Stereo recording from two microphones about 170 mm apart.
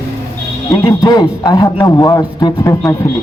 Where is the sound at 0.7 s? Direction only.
20° left (ahead or behind).